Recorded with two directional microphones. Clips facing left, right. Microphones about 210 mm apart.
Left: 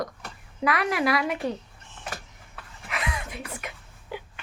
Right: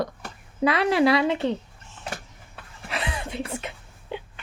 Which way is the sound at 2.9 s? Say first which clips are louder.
Right 2 dB; 30° right (ahead or behind).